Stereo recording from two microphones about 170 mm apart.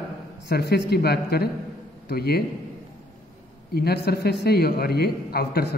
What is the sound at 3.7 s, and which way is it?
A man's voice, 70° left (ahead or behind).